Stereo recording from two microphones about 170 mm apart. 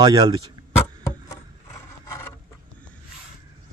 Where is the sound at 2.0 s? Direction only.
15° left (ahead or behind).